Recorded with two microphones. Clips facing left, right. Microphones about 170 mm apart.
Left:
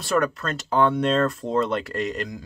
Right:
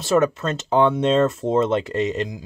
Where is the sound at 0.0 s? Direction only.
20° right (ahead or behind).